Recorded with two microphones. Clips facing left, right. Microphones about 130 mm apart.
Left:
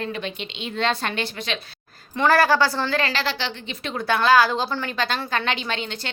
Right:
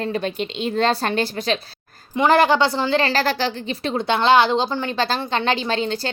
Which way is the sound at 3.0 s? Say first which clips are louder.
Right 5 dB; 40° right (ahead or behind).